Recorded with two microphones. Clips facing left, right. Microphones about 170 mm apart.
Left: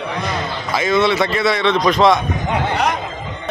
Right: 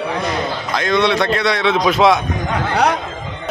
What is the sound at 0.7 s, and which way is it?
A man's voice, 5° left (ahead or behind).